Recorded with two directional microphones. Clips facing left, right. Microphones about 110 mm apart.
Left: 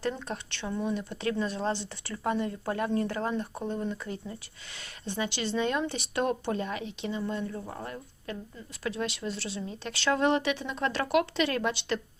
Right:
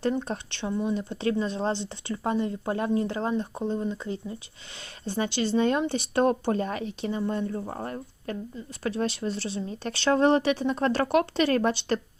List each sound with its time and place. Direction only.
0.2 s speech: 35° right (ahead or behind)
0.6 s speech: 20° right (ahead or behind)
0.9 s speech: 30° right (ahead or behind)